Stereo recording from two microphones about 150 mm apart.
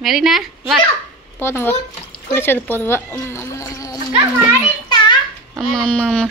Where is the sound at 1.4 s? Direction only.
15° left (ahead or behind).